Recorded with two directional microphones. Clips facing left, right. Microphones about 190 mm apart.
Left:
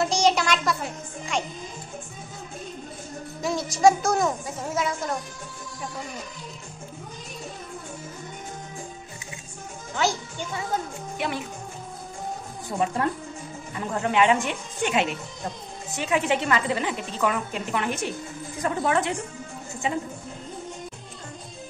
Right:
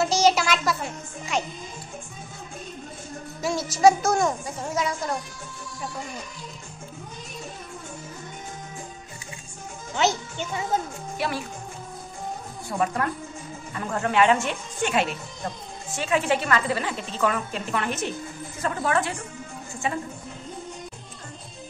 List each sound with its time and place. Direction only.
0.0 s a sound: 5° right (ahead or behind)
1.3 s speech: 5° right (ahead or behind)
3.4 s speech: centre (ahead or behind)
9.9 s a child's voice: 20° right (ahead or behind)
11.1 s speech: 20° left (ahead or behind)
12.6 s a woman's voice: 20° left (ahead or behind)